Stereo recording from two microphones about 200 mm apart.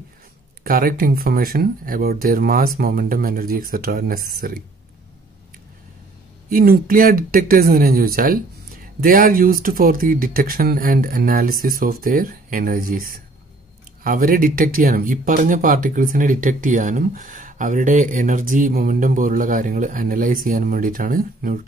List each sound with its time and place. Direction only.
0.7 s speech: 45° right (ahead or behind)
6.5 s speech: 45° right (ahead or behind)